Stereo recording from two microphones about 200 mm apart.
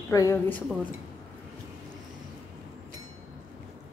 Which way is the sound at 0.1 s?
15° left (ahead or behind).